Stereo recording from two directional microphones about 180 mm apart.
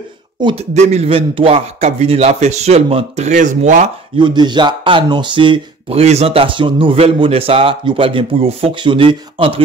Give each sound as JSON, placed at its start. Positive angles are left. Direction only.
{"t": 0.4, "sound": "speech", "side_deg": -25}
{"t": 0.7, "sound": "a man's voice", "side_deg": -40}
{"t": 4.2, "sound": "speech", "side_deg": -25}